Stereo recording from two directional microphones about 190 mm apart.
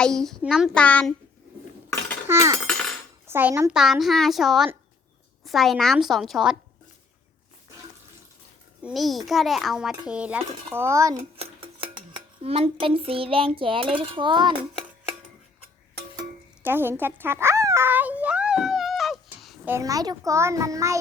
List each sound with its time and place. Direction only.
0.0 s a child's voice: 5° left (ahead or behind)
2.2 s speech: 15° right (ahead or behind)
2.6 s cutlery: 5° left (ahead or behind)
3.2 s a child's voice: 10° right (ahead or behind)
3.7 s a child's voice: 5° right (ahead or behind)
8.8 s a child's voice: centre (ahead or behind); by 11.2 s 15° right (ahead or behind)
11.2 s dishes: 30° right (ahead or behind)
16.6 s a sound: 10° right (ahead or behind)
19.7 s a child's voice: 20° right (ahead or behind)